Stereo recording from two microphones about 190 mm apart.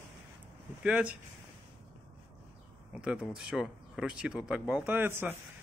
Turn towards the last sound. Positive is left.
turn(degrees=-10)  # may be behind; listen again after turning